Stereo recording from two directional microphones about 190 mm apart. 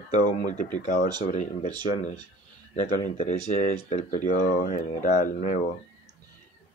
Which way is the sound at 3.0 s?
40° left (ahead or behind).